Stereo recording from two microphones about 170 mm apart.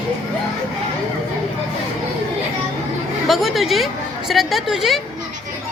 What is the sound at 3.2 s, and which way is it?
A woman's voice, centre (ahead or behind).